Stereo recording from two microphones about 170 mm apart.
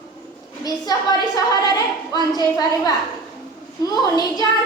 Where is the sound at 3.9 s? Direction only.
25° left (ahead or behind).